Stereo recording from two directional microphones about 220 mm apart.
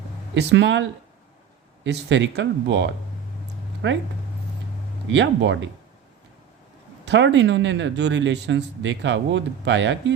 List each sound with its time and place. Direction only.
0.3 s speech: 55° right (ahead or behind)
5.0 s speech: 55° right (ahead or behind)
7.0 s speech: 55° right (ahead or behind)